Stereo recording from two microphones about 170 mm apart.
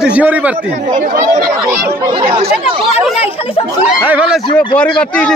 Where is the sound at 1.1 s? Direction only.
50° right (ahead or behind).